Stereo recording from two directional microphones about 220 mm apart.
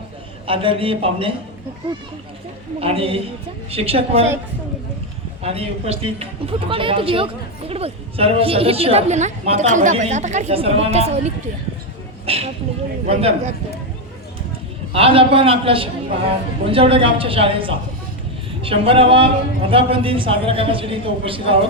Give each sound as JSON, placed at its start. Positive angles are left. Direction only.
{"t": 0.4, "sound": "a woman's voice", "side_deg": -25}
{"t": 2.8, "sound": "a woman's voice", "side_deg": -25}
{"t": 5.4, "sound": "a woman's voice", "side_deg": -25}
{"t": 14.9, "sound": "a woman's voice", "side_deg": -25}